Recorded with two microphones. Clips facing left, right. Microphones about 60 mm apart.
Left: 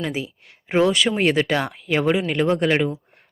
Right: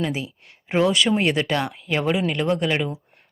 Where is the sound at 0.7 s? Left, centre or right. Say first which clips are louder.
Left 1 dB; centre.